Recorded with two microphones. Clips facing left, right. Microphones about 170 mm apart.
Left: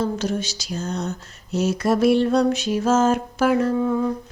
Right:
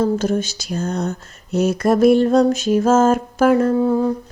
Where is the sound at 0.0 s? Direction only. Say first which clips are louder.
Right 6 dB; 50° right (ahead or behind).